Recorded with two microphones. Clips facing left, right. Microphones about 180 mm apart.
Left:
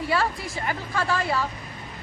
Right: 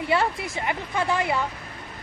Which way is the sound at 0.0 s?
20° right (ahead or behind).